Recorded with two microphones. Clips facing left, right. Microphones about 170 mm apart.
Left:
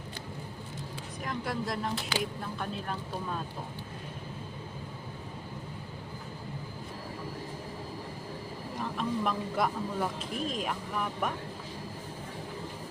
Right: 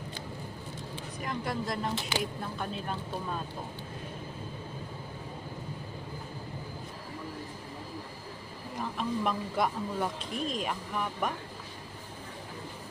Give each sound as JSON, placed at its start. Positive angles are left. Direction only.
{"t": 1.2, "sound": "speech", "side_deg": 0}
{"t": 8.8, "sound": "speech", "side_deg": 0}